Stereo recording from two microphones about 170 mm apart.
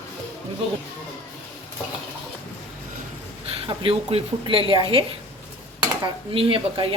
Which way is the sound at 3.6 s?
30° right (ahead or behind).